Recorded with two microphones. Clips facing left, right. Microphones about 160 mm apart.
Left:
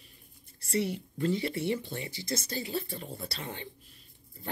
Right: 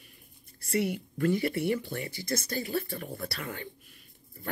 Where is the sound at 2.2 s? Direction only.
55° right (ahead or behind).